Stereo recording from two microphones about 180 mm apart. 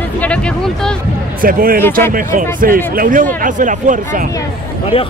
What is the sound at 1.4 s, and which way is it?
Speech, 55° right (ahead or behind).